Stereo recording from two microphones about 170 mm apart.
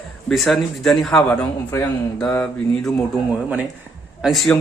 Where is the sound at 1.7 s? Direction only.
15° left (ahead or behind).